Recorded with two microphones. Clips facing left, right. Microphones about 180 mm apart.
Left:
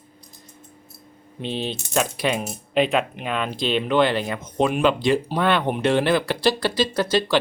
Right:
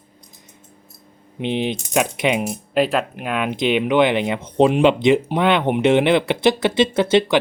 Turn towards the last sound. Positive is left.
turn(degrees=-25)  # may be behind; listen again after turning